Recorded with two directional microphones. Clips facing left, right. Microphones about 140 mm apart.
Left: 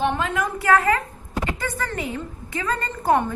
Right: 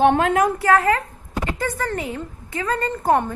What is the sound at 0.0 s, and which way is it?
Speech, 55° right (ahead or behind).